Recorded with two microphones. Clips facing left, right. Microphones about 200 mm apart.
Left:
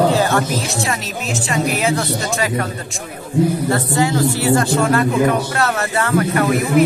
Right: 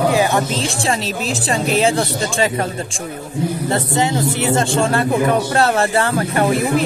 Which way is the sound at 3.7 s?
25° right (ahead or behind).